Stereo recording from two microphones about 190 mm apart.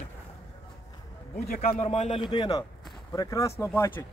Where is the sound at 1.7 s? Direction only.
35° left (ahead or behind); by 4.0 s 10° left (ahead or behind).